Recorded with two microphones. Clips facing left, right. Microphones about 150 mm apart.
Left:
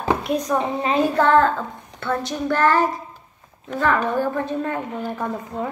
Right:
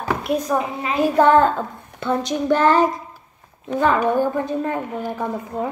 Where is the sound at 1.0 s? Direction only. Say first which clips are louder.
Right 4 dB; 15° right (ahead or behind).